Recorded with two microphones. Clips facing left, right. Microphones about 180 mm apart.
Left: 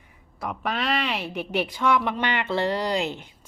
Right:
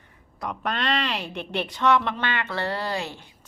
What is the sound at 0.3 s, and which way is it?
A woman's voice, 5° left (ahead or behind).